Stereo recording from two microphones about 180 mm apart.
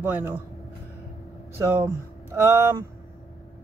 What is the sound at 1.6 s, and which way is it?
Speech, 15° right (ahead or behind).